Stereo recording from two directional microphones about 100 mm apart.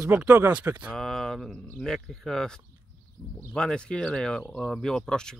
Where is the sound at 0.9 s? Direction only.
5° left (ahead or behind).